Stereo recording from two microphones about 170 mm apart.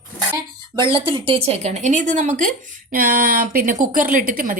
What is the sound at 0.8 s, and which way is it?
A woman's voice, 30° right (ahead or behind).